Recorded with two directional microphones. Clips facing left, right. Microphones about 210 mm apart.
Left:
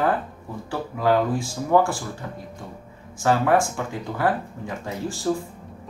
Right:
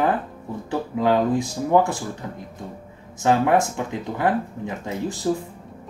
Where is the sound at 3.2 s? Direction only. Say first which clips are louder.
Right 1 dB; 20° right (ahead or behind).